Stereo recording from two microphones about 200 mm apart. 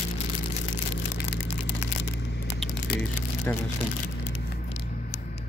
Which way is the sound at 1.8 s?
60° left (ahead or behind).